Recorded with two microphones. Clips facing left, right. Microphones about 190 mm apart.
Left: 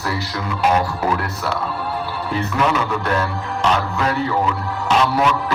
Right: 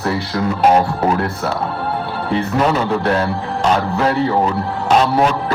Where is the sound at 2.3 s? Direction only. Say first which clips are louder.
Right 4 dB; 30° right (ahead or behind).